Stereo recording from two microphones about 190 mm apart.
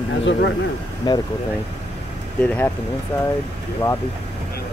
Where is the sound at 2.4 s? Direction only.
5° left (ahead or behind).